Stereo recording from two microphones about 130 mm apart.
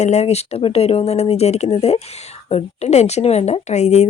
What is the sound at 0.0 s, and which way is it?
A woman's voice, 60° left (ahead or behind).